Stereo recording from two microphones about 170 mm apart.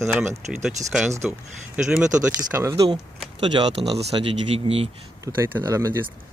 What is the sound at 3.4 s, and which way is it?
Speech, 30° right (ahead or behind).